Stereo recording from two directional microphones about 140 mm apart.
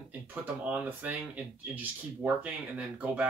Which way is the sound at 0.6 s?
10° right (ahead or behind).